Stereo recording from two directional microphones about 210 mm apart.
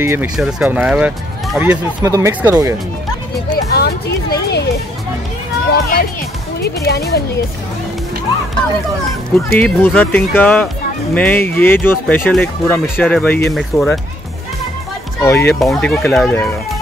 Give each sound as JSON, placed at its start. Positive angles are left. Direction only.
{"t": 0.0, "sound": "speech", "side_deg": -10}
{"t": 3.7, "sound": "a sound", "side_deg": 50}
{"t": 5.7, "sound": "speech", "side_deg": 45}
{"t": 9.3, "sound": "speech", "side_deg": 5}
{"t": 15.2, "sound": "speech", "side_deg": 10}
{"t": 15.6, "sound": "speech", "side_deg": 0}